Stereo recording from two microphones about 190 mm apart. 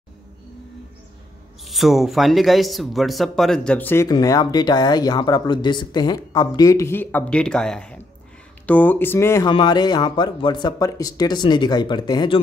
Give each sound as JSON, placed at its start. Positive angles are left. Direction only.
{"t": 1.6, "sound": "speech", "side_deg": 0}
{"t": 9.5, "sound": "speech", "side_deg": 25}